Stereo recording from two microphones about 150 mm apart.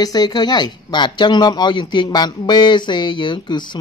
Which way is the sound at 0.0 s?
25° left (ahead or behind).